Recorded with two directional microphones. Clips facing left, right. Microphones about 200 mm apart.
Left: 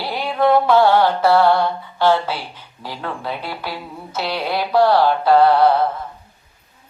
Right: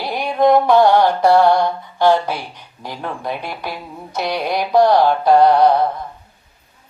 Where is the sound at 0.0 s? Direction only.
15° right (ahead or behind).